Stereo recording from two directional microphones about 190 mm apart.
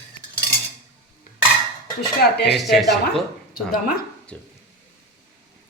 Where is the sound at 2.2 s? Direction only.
60° left (ahead or behind).